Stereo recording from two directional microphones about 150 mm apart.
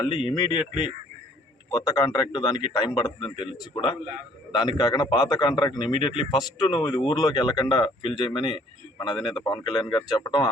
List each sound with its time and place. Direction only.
0.0 s a man's voice: 35° left (ahead or behind)